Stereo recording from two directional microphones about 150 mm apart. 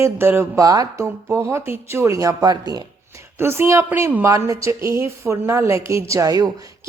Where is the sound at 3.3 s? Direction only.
15° right (ahead or behind).